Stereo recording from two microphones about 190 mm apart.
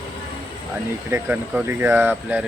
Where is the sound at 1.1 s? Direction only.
10° right (ahead or behind).